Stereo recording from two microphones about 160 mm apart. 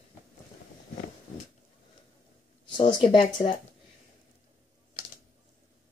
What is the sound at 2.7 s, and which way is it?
Speech, 30° left (ahead or behind).